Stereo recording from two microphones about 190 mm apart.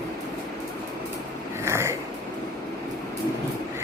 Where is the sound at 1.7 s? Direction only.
15° right (ahead or behind).